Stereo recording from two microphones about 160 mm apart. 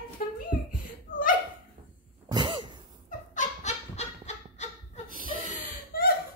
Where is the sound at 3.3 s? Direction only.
50° left (ahead or behind).